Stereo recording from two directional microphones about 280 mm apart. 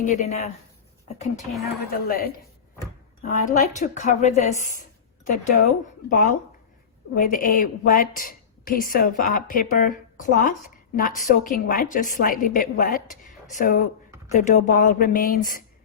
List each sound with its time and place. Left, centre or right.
0.0 s a woman's voice: left